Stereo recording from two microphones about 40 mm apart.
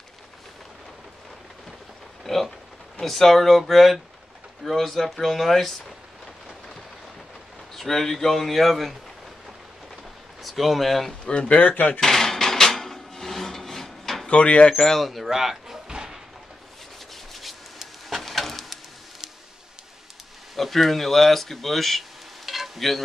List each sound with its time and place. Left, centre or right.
2.3 s speech: centre
7.7 s speech: centre
10.4 s speech: centre
11.2 s speech: left
12.0 s hammer: centre
14.2 s speech: left
14.8 s speech: centre
15.0 s speech: centre
17.1 s rub: centre
20.5 s speech: centre
22.5 s stir: centre